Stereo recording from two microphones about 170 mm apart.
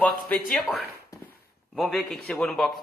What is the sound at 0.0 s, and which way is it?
Speech, 5° left (ahead or behind).